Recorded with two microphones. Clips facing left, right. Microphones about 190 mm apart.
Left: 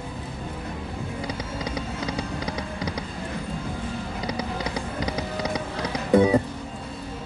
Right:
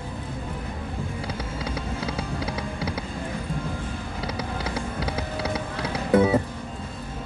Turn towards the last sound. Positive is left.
turn(degrees=-5)  # may be behind; listen again after turning